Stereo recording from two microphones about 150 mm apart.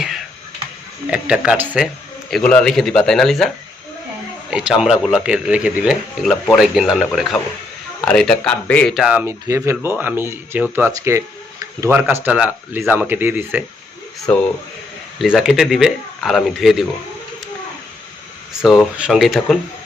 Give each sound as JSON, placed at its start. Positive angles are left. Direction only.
{"t": 1.1, "sound": "speech", "side_deg": -5}
{"t": 2.3, "sound": "speech", "side_deg": 10}
{"t": 4.5, "sound": "speech", "side_deg": -5}
{"t": 9.2, "sound": "speech", "side_deg": -20}
{"t": 14.3, "sound": "speech", "side_deg": 10}
{"t": 15.2, "sound": "speech", "side_deg": 0}
{"t": 18.6, "sound": "speech", "side_deg": 0}